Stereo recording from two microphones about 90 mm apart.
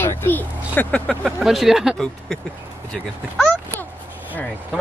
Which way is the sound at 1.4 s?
5° right (ahead or behind).